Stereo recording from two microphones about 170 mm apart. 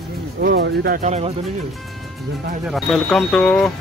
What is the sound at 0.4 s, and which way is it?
Speech, 75° right (ahead or behind).